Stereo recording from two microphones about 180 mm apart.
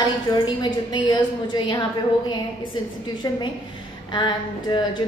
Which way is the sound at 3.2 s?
20° left (ahead or behind).